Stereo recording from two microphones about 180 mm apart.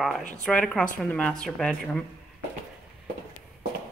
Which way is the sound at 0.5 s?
5° left (ahead or behind).